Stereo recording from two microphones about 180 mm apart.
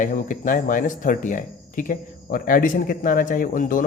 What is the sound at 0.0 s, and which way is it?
Speech, 45° left (ahead or behind).